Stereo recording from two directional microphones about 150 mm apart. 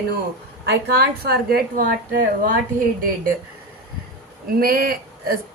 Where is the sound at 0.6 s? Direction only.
90° right.